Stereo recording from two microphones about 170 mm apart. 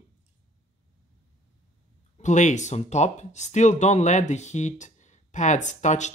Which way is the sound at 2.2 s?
45° left (ahead or behind).